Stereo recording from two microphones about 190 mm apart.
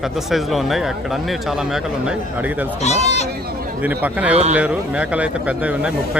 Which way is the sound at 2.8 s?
35° left (ahead or behind).